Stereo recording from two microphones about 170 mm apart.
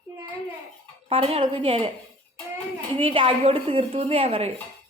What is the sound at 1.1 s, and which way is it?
Speech, 35° right (ahead or behind).